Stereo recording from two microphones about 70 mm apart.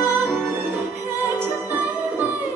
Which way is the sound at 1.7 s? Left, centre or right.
Right.